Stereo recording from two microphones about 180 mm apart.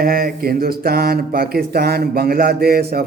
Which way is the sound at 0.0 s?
55° right (ahead or behind).